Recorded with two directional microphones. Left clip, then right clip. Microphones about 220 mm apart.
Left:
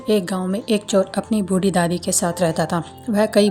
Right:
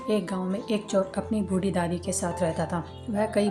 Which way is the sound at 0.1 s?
45° left (ahead or behind).